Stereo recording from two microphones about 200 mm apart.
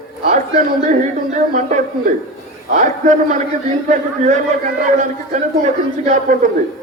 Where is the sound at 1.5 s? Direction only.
40° right (ahead or behind).